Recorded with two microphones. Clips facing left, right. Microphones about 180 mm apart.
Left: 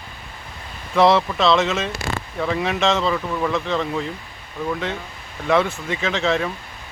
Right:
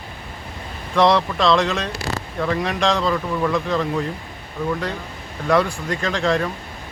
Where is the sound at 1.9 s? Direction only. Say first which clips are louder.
Even; 35° right (ahead or behind).